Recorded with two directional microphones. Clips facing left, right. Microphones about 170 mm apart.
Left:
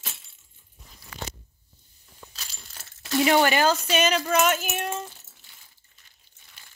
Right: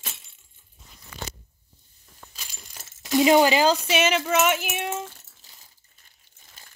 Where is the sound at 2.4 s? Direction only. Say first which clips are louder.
Right 3 dB; 15° right (ahead or behind).